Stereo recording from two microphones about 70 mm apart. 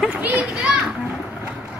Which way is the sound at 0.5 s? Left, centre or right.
Centre.